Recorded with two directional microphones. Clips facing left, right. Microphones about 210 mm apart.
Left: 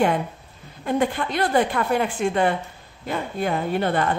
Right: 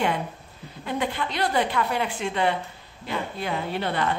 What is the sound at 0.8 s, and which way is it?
A woman's voice, 50° left (ahead or behind).